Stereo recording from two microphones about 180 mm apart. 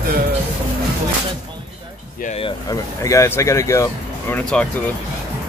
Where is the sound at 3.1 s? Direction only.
15° left (ahead or behind).